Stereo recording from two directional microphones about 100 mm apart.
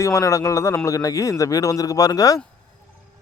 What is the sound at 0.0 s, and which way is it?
Speech, 30° left (ahead or behind).